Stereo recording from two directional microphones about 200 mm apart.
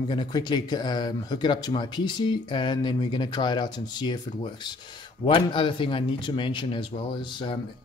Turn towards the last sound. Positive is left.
turn(degrees=25)  # may be behind; listen again after turning